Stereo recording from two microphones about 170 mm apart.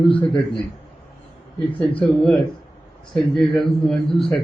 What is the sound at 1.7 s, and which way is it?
Speech, 10° left (ahead or behind).